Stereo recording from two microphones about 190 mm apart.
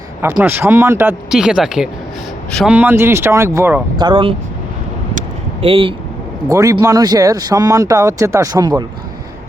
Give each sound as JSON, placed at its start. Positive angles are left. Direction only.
{"t": 0.2, "sound": "a man's voice", "side_deg": -10}
{"t": 2.7, "sound": "speech", "side_deg": -10}
{"t": 3.9, "sound": "speech", "side_deg": -25}
{"t": 5.6, "sound": "speech", "side_deg": -30}
{"t": 6.5, "sound": "speech", "side_deg": -15}